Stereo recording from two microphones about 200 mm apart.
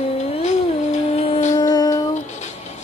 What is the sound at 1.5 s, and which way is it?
Music, 20° left (ahead or behind).